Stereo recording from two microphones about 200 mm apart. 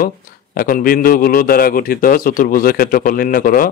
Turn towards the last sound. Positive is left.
turn(degrees=45)  # may be behind; listen again after turning